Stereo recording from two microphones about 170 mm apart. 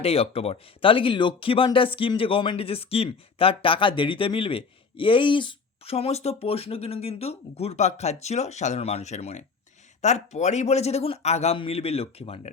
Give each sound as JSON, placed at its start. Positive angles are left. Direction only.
{"t": 0.0, "sound": "speech", "side_deg": 35}